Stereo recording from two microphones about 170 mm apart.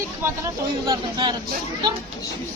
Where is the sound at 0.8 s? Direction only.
25° right (ahead or behind).